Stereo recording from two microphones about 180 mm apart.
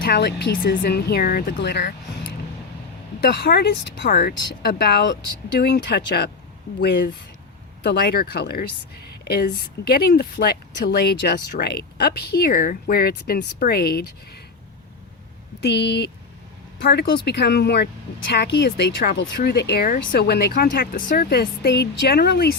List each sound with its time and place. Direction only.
0.0 s a woman's voice: 65° left (ahead or behind)
3.4 s a woman's voice: 65° left (ahead or behind)
4.2 s a woman's voice: 55° left (ahead or behind)
15.6 s a woman's voice: 70° left (ahead or behind)